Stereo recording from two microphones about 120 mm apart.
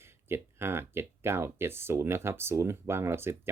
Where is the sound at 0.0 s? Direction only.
20° right (ahead or behind).